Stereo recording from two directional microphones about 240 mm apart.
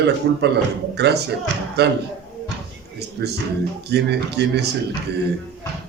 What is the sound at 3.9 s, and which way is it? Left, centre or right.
Speech, right.